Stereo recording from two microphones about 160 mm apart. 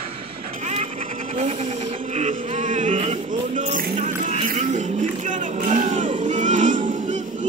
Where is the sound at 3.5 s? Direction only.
55° right (ahead or behind).